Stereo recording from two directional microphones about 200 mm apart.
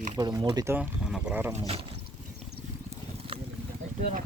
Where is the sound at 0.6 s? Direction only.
10° right (ahead or behind).